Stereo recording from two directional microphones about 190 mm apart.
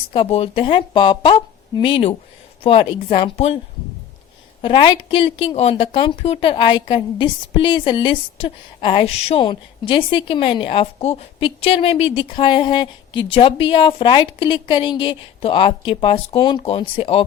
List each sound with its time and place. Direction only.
0.1 s a woman's voice: 30° left (ahead or behind)
4.6 s a woman's voice: 25° left (ahead or behind)